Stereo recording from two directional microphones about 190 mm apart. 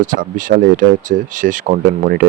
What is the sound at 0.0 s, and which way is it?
Speech, 45° right (ahead or behind).